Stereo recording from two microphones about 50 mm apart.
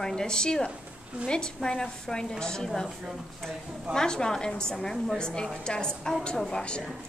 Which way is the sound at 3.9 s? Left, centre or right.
Centre.